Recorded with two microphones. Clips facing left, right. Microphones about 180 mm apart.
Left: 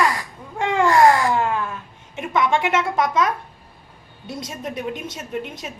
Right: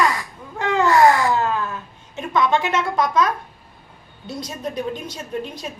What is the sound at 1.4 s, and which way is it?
A woman's voice, 25° left (ahead or behind).